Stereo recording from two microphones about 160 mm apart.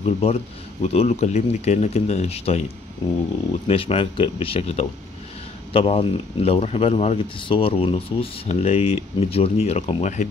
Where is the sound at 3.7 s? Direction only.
35° left (ahead or behind).